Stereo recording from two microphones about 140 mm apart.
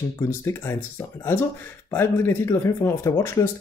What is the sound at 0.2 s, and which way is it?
Speech, 20° left (ahead or behind).